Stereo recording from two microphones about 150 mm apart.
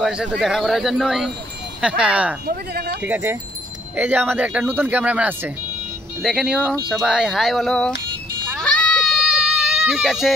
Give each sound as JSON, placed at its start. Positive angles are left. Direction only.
{"t": 0.0, "sound": "speech", "side_deg": -5}
{"t": 2.4, "sound": "speech", "side_deg": -90}
{"t": 3.0, "sound": "speech", "side_deg": -15}
{"t": 8.5, "sound": "a sound", "side_deg": 5}